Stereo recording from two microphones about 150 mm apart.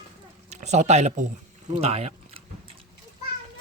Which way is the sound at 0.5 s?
50° right (ahead or behind).